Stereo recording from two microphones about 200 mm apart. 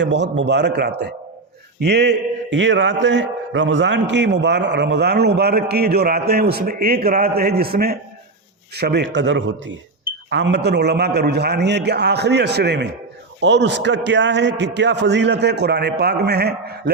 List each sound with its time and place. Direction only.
0.0 s a man's voice: 60° right (ahead or behind)